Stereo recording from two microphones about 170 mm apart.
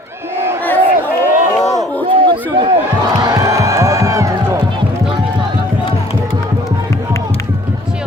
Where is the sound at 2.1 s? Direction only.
30° right (ahead or behind).